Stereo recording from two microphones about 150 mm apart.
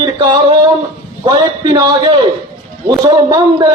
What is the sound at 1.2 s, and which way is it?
Speech, 30° right (ahead or behind).